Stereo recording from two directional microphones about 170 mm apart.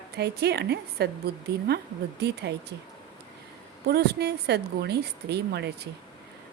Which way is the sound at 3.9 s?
70° right (ahead or behind).